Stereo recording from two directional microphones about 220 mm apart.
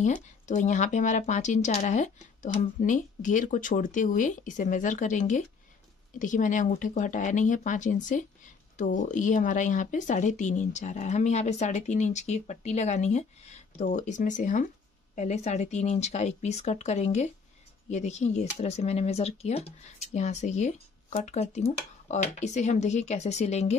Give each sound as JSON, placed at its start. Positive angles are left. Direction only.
{"t": 0.0, "sound": "speech", "side_deg": 35}